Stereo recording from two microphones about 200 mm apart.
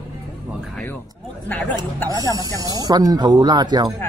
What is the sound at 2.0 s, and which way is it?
Speech, 20° right (ahead or behind).